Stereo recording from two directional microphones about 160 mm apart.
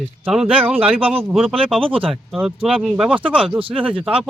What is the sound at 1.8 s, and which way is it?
Speech, 35° right (ahead or behind).